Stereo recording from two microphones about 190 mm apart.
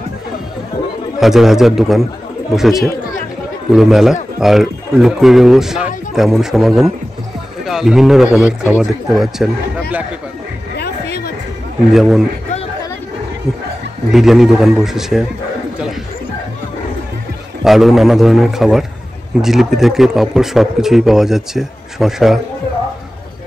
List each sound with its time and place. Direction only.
1.2 s speech: centre (ahead or behind)
10.8 s a sound: 55° left (ahead or behind)
11.9 s speech: centre (ahead or behind)
14.1 s speech: centre (ahead or behind)
17.6 s speech: centre (ahead or behind)